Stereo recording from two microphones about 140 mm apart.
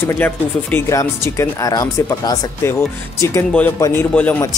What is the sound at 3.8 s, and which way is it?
Speech, 15° left (ahead or behind).